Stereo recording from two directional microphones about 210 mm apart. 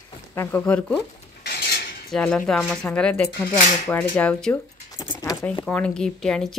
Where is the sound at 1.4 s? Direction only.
45° left (ahead or behind).